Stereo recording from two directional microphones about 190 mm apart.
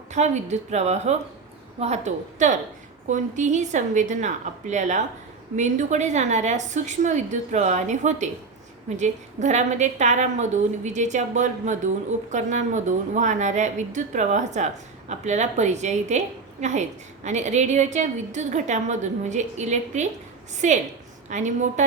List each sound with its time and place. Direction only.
0.1 s a woman's voice: 35° right (ahead or behind)